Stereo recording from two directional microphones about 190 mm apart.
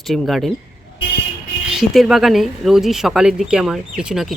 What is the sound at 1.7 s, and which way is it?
Speech, 5° right (ahead or behind).